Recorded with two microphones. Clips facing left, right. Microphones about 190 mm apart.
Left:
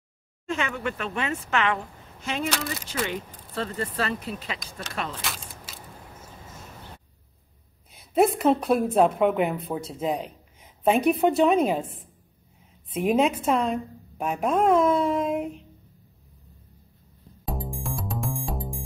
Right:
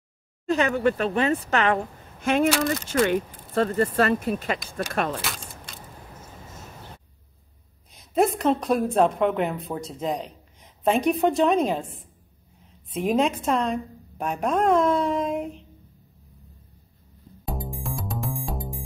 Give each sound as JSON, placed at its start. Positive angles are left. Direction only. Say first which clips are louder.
{"t": 0.5, "sound": "speech", "louder": "right 7 dB", "side_deg": -40}
{"t": 2.2, "sound": "speech", "louder": "right 8 dB", "side_deg": -55}
{"t": 5.2, "sound": "keys jangling", "louder": "right 1 dB", "side_deg": 0}
{"t": 7.9, "sound": "speech", "louder": "left 1 dB", "side_deg": 5}
{"t": 12.9, "sound": "speech", "louder": "left 1 dB", "side_deg": 0}
{"t": 17.6, "sound": "music", "louder": "even", "side_deg": 0}